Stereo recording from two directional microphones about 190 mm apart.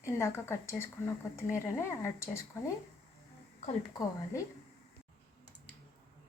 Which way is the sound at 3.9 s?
15° left (ahead or behind).